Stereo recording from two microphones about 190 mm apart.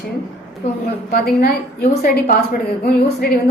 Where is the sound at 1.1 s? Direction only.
55° left (ahead or behind).